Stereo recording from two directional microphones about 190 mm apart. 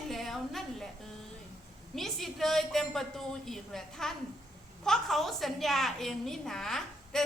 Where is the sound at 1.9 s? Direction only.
Centre (ahead or behind).